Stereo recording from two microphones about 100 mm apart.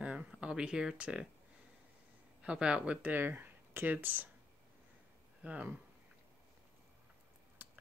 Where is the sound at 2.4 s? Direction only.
10° right (ahead or behind).